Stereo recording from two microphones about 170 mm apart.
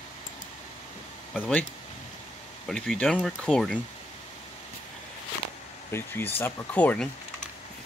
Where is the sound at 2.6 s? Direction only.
5° left (ahead or behind).